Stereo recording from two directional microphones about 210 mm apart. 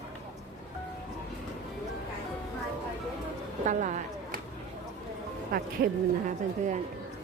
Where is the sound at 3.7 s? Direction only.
35° right (ahead or behind).